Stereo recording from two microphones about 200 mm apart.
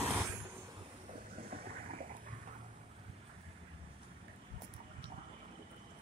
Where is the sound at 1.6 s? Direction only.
50° right (ahead or behind).